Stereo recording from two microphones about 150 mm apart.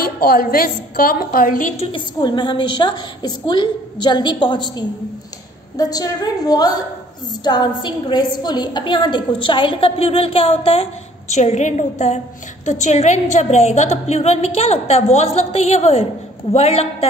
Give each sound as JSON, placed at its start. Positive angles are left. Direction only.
{"t": 0.0, "sound": "a woman's voice", "side_deg": 90}
{"t": 1.8, "sound": "a woman's voice", "side_deg": 35}